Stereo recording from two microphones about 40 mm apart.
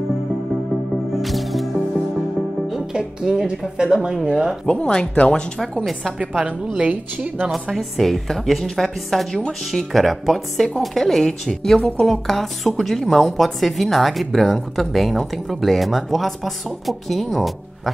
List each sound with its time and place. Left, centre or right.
1.1 s music: centre
2.9 s speech: centre
4.6 s speech: left
5.6 s speech: centre
6.8 s a woman's voice: right
7.7 s speech: centre